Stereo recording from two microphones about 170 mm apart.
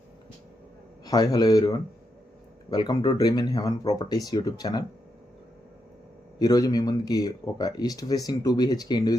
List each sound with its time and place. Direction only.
1.0 s speech: 25° left (ahead or behind)
6.4 s speech: 20° left (ahead or behind)